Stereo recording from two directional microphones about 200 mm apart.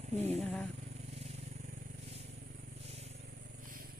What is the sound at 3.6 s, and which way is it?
Vehicle, 45° right (ahead or behind).